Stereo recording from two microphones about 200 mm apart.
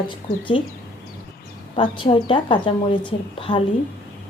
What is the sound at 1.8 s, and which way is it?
A woman's voice, 25° left (ahead or behind).